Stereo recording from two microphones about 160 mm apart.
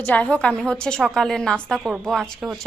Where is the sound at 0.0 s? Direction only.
10° left (ahead or behind).